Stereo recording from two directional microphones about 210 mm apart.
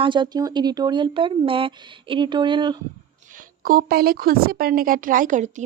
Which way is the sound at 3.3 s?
40° right (ahead or behind).